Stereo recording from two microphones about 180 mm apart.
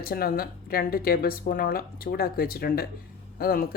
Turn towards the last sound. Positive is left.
turn(degrees=55)  # may be behind; listen again after turning